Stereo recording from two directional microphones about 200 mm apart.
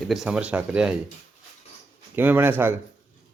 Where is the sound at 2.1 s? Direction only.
10° right (ahead or behind).